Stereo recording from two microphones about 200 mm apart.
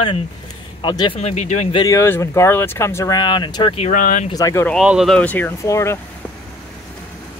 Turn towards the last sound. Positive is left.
turn(degrees=15)  # may be behind; listen again after turning